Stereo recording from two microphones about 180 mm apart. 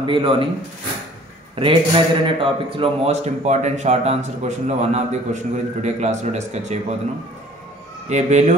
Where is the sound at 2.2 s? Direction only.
30° right (ahead or behind).